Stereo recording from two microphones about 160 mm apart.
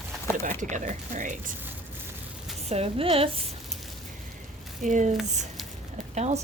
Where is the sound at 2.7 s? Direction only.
35° right (ahead or behind).